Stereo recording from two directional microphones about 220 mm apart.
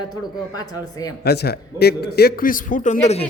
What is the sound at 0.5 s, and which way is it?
Speech, 15° left (ahead or behind).